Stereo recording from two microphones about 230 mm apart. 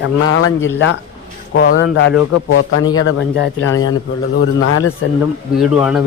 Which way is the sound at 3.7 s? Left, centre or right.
Centre.